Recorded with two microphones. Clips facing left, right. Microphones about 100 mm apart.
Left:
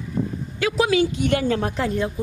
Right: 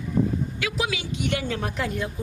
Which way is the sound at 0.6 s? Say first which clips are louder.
Left 14 dB; 40° left (ahead or behind).